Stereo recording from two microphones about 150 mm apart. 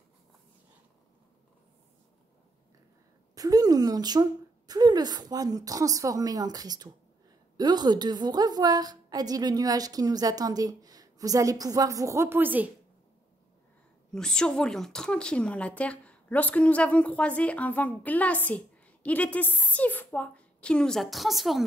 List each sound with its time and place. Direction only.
3.3 s a woman's voice: 25° right (ahead or behind)
14.1 s speech: 5° left (ahead or behind)